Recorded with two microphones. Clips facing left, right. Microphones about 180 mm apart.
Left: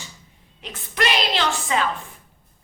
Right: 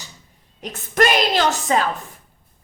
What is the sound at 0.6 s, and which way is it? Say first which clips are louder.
A woman's voice: right 7 dB; 45° right (ahead or behind).